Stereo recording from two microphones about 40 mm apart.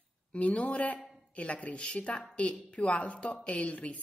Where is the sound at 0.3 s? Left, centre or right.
Left.